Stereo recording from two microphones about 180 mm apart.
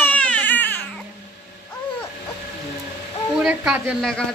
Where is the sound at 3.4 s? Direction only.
5° right (ahead or behind).